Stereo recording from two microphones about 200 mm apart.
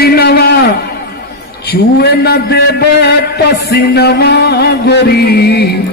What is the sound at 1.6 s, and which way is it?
A man's voice, 50° left (ahead or behind).